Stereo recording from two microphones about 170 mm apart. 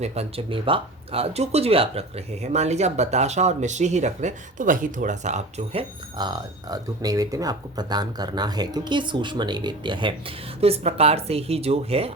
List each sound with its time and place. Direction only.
0.0 s speech: 40° right (ahead or behind)
6.1 s speech: 25° right (ahead or behind)